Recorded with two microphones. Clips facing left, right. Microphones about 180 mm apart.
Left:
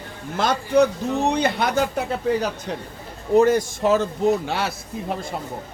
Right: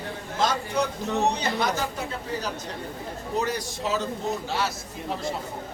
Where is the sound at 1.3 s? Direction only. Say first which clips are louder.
Left 6 dB; 60° left (ahead or behind).